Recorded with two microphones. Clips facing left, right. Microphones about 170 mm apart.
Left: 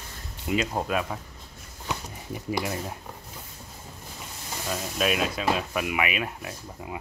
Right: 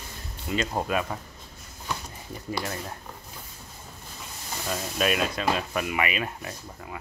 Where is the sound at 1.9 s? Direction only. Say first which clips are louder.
Left 2 dB; 15° left (ahead or behind).